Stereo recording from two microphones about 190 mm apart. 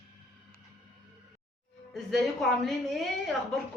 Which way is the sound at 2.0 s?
Centre (ahead or behind).